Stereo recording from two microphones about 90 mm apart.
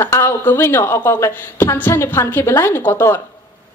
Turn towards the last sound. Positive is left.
turn(degrees=30)  # may be behind; listen again after turning